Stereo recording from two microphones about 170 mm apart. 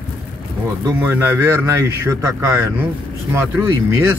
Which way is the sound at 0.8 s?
15° right (ahead or behind).